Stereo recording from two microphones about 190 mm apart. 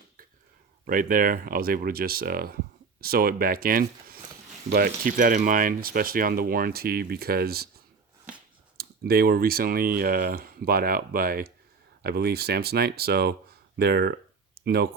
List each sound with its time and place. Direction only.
0.9 s speech: 45° right (ahead or behind)
8.8 s speech: 55° right (ahead or behind)
13.7 s a sound: 55° right (ahead or behind)